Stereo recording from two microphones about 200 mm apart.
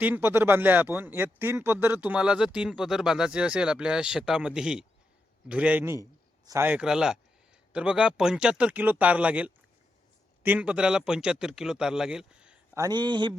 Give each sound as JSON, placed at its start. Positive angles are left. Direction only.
{"t": 0.0, "sound": "a man's voice", "side_deg": -10}
{"t": 12.8, "sound": "speech", "side_deg": -20}